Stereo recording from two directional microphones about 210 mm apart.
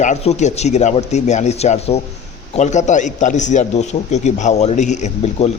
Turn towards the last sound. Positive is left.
turn(degrees=30)  # may be behind; listen again after turning